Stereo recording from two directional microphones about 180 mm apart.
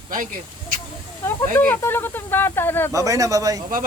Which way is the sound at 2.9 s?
20° right (ahead or behind).